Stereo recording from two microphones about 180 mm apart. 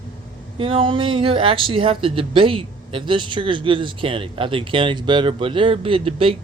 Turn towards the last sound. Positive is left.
turn(degrees=-30)  # may be behind; listen again after turning